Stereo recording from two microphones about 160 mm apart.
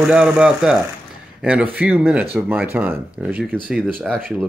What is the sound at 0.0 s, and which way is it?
Speech, 5° right (ahead or behind).